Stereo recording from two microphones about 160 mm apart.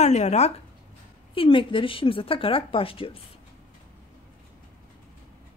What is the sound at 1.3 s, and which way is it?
A woman's voice, 35° left (ahead or behind).